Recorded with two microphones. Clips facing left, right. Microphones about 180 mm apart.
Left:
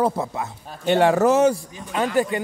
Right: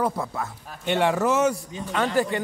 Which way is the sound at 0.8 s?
40° left (ahead or behind).